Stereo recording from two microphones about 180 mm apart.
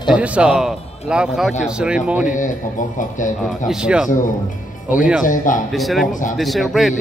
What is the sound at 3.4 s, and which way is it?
Speech, 5° right (ahead or behind).